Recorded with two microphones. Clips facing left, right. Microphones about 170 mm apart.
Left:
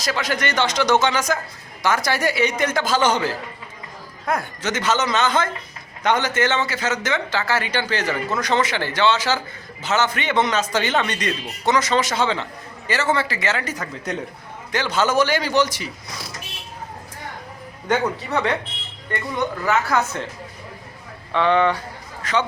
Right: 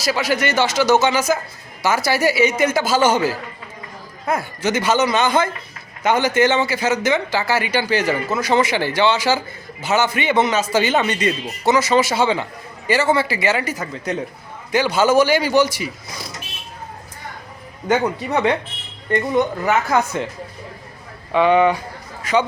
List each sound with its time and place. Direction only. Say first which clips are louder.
0.0 s a man's voice: right 4 dB; 10° right (ahead or behind)
17.8 s speech: right 3 dB; 10° right (ahead or behind)
19.1 s speech: right 7 dB; 20° right (ahead or behind)
21.3 s a man's voice: right 4 dB; 10° right (ahead or behind)